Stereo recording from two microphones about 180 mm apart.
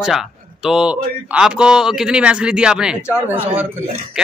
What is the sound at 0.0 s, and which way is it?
A man's voice, 5° right (ahead or behind).